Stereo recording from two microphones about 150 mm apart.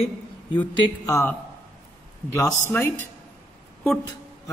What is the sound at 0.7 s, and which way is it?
Speech, 25° left (ahead or behind).